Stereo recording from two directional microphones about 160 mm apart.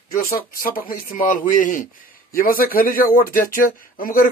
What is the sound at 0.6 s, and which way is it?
Speech, 65° left (ahead or behind).